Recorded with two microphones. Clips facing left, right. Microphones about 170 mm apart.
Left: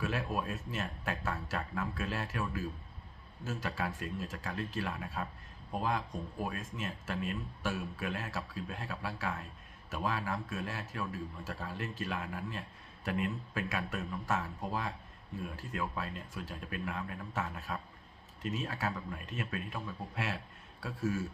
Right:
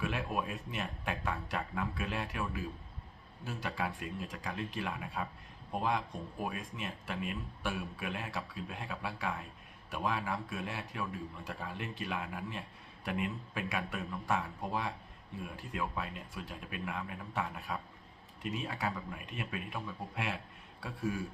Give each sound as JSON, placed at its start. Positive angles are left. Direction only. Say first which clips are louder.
{"t": 0.0, "sound": "a man's voice", "louder": "even", "side_deg": -15}
{"t": 6.4, "sound": "a man's voice", "louder": "even", "side_deg": -15}